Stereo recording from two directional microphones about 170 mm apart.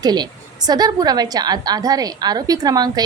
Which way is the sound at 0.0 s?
25° right (ahead or behind).